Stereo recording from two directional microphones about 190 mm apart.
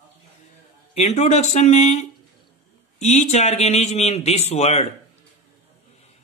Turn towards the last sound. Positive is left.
turn(degrees=35)  # may be behind; listen again after turning